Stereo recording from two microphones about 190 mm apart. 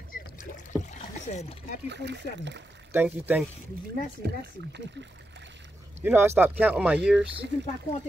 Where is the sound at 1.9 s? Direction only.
65° right (ahead or behind).